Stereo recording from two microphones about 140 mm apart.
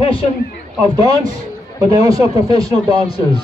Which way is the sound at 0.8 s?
25° right (ahead or behind).